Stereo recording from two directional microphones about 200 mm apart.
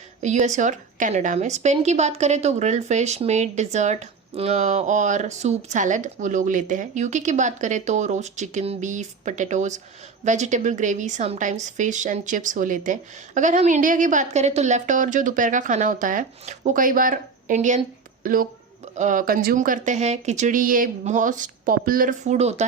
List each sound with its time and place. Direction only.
0.2 s a woman's voice: 35° right (ahead or behind)